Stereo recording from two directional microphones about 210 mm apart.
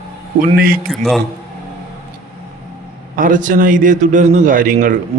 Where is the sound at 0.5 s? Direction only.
45° right (ahead or behind).